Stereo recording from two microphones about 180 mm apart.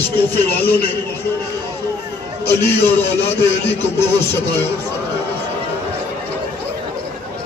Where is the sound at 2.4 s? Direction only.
15° left (ahead or behind).